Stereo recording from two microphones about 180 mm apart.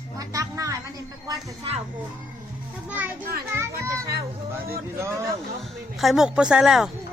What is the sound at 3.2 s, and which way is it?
Speech, 55° right (ahead or behind).